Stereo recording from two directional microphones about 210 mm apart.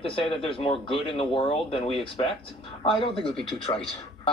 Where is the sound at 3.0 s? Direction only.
25° left (ahead or behind).